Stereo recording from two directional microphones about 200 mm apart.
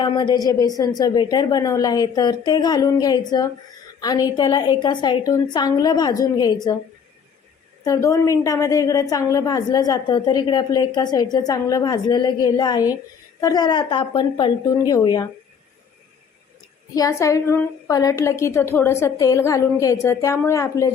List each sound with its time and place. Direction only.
0.0 s a woman's voice: 20° left (ahead or behind)
7.9 s a woman's voice: 15° left (ahead or behind)
16.9 s a woman's voice: 15° left (ahead or behind)